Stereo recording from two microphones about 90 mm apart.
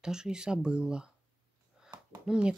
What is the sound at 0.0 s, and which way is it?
Speech, 10° right (ahead or behind).